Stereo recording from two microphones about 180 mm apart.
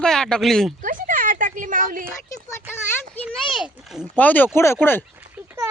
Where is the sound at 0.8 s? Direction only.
50° right (ahead or behind).